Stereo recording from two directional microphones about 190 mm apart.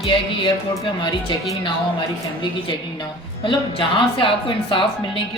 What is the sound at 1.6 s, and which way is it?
A woman's voice, 25° left (ahead or behind).